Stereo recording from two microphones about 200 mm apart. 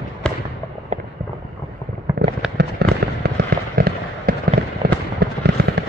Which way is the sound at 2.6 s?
55° right (ahead or behind).